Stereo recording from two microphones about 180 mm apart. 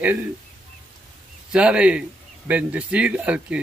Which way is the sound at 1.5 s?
5° right (ahead or behind).